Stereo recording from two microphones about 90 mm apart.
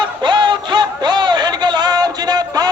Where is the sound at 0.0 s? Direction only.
60° right (ahead or behind).